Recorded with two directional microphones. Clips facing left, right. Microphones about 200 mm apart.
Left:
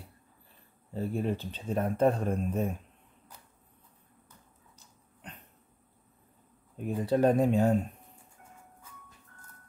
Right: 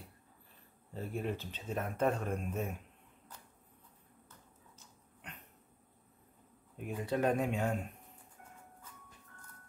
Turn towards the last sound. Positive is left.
turn(degrees=35)  # may be behind; listen again after turning